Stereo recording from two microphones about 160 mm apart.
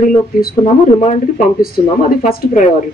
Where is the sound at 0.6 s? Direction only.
45° left (ahead or behind).